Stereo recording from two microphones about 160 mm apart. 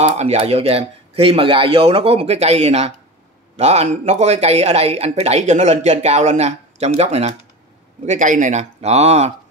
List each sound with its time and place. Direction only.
0.0 s speech: 45° right (ahead or behind)